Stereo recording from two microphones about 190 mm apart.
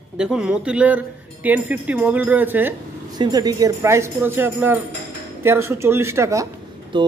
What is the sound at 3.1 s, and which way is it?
Speech, 20° right (ahead or behind).